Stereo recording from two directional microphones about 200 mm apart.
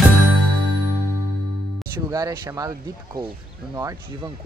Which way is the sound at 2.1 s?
15° right (ahead or behind).